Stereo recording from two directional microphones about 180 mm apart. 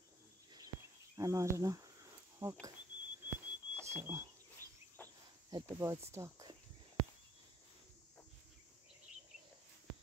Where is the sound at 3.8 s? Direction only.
15° right (ahead or behind).